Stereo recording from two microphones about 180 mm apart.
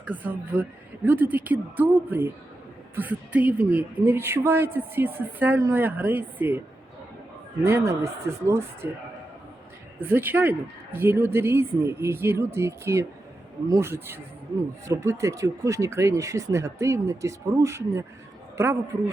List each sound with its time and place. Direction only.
0.0 s a woman's voice: 10° right (ahead or behind)
7.6 s a woman's voice: 15° right (ahead or behind)
10.0 s a woman's voice: 10° right (ahead or behind)